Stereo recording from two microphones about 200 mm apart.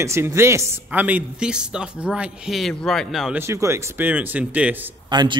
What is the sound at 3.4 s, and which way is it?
A man's voice, 15° right (ahead or behind).